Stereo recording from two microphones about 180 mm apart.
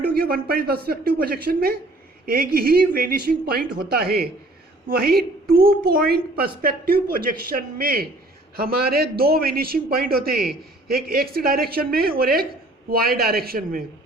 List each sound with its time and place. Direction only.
0.0 s a man's voice: 55° right (ahead or behind)